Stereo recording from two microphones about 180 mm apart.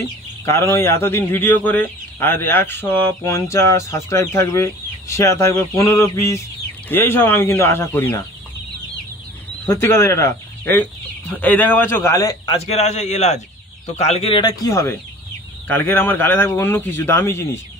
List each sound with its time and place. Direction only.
0.5 s a man's voice: 15° left (ahead or behind)
9.7 s speech: 15° left (ahead or behind)
12.4 s a man's voice: 35° left (ahead or behind); by 17.5 s 15° left (ahead or behind)